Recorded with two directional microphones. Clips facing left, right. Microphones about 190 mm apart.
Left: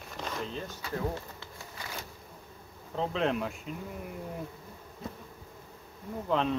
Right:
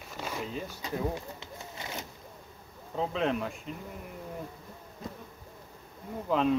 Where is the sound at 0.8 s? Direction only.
20° right (ahead or behind).